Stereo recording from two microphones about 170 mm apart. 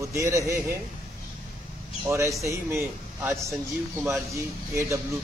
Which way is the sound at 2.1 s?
15° right (ahead or behind).